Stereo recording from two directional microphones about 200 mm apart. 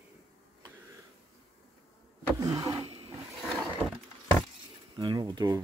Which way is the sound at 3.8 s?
Centre (ahead or behind).